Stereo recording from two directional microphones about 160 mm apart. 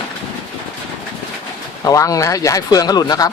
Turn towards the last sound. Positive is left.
turn(degrees=25)  # may be behind; listen again after turning